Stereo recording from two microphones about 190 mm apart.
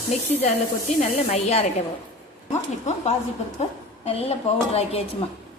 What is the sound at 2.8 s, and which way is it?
A woman's voice, 35° left (ahead or behind).